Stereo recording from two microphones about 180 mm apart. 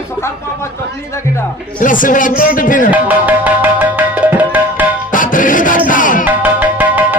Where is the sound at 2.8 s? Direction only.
10° right (ahead or behind).